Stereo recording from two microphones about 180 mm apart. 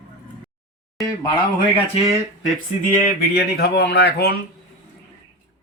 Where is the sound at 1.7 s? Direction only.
30° left (ahead or behind).